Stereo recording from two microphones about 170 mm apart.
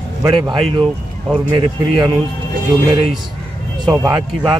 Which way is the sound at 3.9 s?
Centre (ahead or behind).